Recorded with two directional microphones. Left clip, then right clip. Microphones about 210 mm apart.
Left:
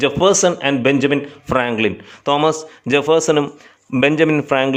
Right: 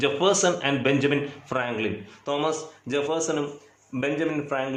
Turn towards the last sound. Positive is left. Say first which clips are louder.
# left 11 dB
turn(degrees=50)  # may be behind; listen again after turning